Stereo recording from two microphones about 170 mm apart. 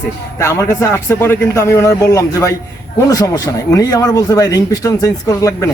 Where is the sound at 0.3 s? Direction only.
20° left (ahead or behind).